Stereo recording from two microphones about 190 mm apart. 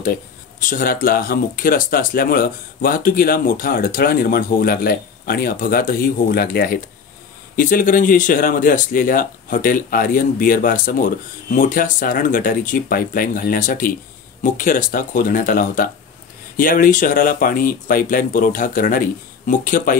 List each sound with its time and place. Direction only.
0.7 s speech: 50° left (ahead or behind)